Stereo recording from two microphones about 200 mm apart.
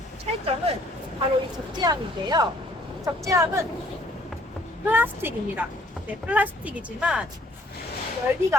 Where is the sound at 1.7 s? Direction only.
20° right (ahead or behind).